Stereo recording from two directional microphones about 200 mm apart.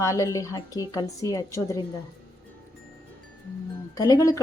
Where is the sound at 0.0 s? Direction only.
15° left (ahead or behind).